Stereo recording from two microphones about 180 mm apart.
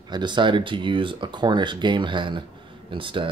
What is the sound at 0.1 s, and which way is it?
Speech, 25° right (ahead or behind).